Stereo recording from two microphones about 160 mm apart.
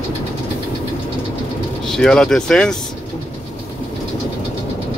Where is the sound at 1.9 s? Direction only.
5° left (ahead or behind).